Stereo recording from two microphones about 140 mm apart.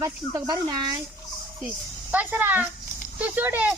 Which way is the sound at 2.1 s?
10° right (ahead or behind).